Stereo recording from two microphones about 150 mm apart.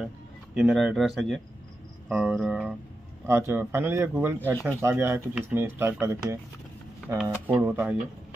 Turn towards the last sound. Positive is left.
turn(degrees=-15)  # may be behind; listen again after turning